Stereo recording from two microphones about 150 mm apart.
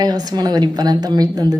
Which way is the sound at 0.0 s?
25° right (ahead or behind).